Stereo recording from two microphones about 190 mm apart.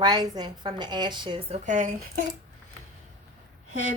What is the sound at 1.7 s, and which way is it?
Speech, 45° right (ahead or behind).